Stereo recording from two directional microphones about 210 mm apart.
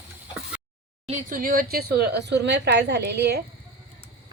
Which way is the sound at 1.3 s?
40° right (ahead or behind).